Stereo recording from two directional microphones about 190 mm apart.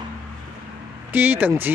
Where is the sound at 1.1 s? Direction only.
10° right (ahead or behind).